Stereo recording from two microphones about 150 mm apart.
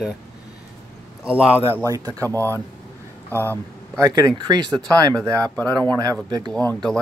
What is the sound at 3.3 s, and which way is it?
Speech, 15° left (ahead or behind).